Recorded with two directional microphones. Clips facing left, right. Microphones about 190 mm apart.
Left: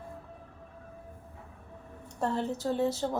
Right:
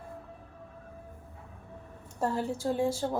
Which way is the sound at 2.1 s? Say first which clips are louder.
Even; 5° right (ahead or behind).